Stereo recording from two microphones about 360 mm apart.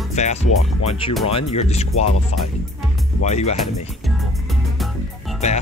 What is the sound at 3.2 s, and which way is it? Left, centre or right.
Speech, centre.